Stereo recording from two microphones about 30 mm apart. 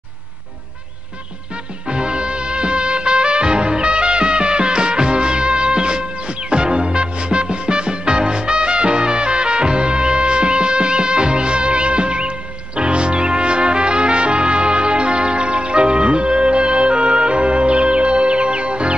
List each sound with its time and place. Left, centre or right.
1.9 s music: right